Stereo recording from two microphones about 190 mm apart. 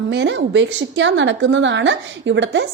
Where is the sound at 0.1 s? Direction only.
70° right (ahead or behind).